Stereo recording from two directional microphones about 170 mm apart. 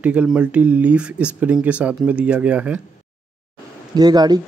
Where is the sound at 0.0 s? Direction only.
5° right (ahead or behind).